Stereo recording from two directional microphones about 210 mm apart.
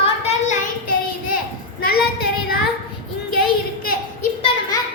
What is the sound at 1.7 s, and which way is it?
Child singing, 45° left (ahead or behind).